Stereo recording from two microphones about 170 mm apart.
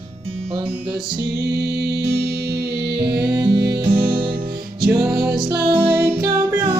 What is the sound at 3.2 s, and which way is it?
Music, 25° right (ahead or behind).